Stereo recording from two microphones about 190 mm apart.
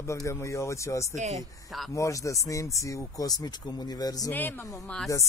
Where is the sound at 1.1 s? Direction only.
35° right (ahead or behind).